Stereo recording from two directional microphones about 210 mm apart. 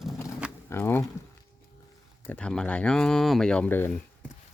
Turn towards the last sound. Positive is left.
turn(degrees=5)  # may be behind; listen again after turning